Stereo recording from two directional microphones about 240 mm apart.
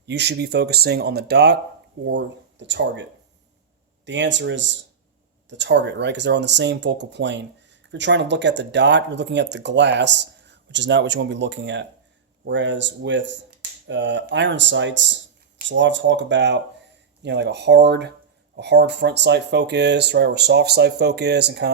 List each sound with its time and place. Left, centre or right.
0.0 s speech: right